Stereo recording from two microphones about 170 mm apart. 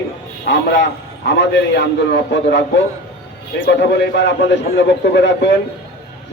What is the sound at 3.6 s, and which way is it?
A man's voice, 90° left.